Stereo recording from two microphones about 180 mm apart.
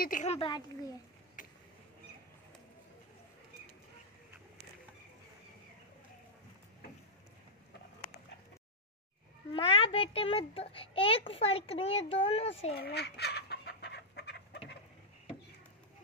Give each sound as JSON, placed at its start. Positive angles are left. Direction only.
{"t": 0.0, "sound": "a child's voice", "side_deg": 45}
{"t": 9.5, "sound": "a child's voice", "side_deg": 30}
{"t": 12.7, "sound": "chicken", "side_deg": 60}